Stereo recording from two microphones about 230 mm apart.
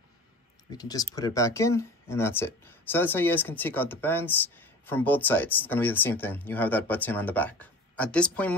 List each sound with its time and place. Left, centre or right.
0.7 s speech: centre